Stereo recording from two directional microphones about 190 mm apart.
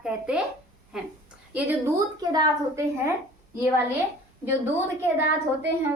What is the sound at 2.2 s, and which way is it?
A woman's voice, 20° right (ahead or behind).